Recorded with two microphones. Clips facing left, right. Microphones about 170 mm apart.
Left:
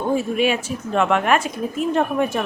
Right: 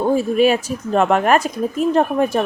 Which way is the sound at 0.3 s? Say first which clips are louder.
Right 5 dB; 40° right (ahead or behind).